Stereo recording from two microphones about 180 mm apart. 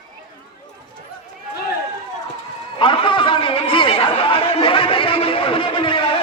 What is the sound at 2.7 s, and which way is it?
Chatter, 30° left (ahead or behind).